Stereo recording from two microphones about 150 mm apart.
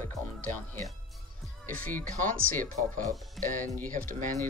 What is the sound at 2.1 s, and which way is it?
Speech, 65° right (ahead or behind).